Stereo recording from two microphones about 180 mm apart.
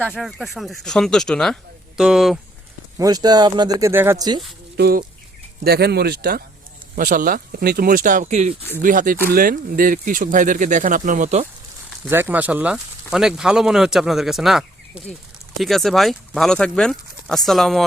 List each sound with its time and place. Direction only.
0.1 s speech: centre (ahead or behind)
3.0 s speech: 20° right (ahead or behind)
4.8 s speech: 60° right (ahead or behind)
6.9 s speech: 50° right (ahead or behind)
12.0 s speech: 10° right (ahead or behind)